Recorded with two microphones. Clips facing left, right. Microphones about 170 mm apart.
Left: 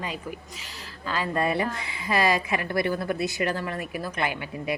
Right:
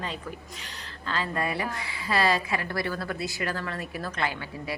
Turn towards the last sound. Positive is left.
turn(degrees=15)  # may be behind; listen again after turning